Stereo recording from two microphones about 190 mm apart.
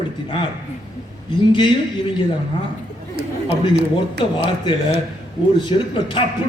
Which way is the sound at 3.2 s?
60° right (ahead or behind).